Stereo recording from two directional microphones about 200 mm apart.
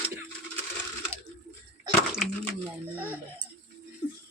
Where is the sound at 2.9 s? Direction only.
10° right (ahead or behind).